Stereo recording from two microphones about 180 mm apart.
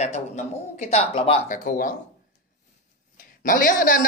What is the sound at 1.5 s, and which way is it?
Speech, 50° left (ahead or behind).